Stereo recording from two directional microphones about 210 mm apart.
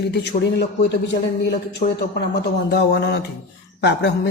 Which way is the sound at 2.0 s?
50° left (ahead or behind).